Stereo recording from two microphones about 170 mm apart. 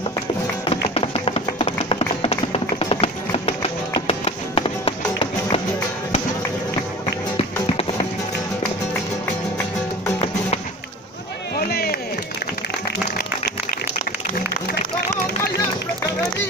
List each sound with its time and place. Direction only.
0.7 s music: 35° left (ahead or behind)
1.4 s tap: 30° left (ahead or behind)
2.8 s music: 35° left (ahead or behind)
7.3 s music: 35° left (ahead or behind)
11.5 s chop: 65° left (ahead or behind)